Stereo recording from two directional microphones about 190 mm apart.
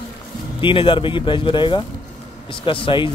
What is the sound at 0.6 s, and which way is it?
Speech, 25° left (ahead or behind).